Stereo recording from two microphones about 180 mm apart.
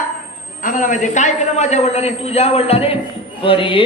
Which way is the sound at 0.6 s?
45° left (ahead or behind).